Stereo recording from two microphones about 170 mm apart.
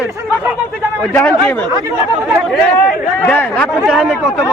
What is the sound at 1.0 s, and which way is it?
Speech, 10° left (ahead or behind).